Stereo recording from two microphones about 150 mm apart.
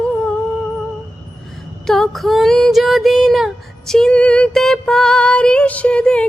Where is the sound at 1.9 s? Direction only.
Centre (ahead or behind).